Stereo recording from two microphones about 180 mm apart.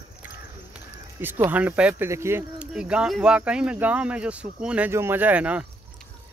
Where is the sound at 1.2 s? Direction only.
10° right (ahead or behind).